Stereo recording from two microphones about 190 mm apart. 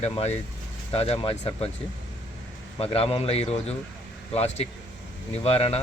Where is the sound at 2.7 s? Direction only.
30° left (ahead or behind).